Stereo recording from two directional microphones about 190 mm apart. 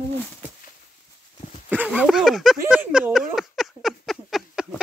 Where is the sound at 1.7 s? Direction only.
10° right (ahead or behind).